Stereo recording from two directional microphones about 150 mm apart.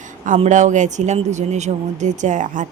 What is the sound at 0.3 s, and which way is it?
Speech, 50° right (ahead or behind).